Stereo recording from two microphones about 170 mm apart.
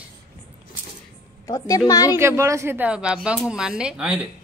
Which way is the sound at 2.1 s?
15° right (ahead or behind).